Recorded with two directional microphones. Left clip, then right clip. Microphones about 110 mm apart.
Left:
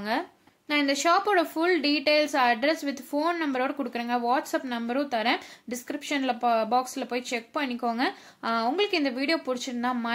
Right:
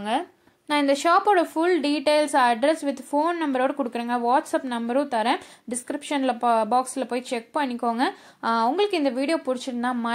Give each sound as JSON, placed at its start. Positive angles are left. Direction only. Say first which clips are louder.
{"t": 0.7, "sound": "a woman's voice", "louder": "right 3 dB", "side_deg": -35}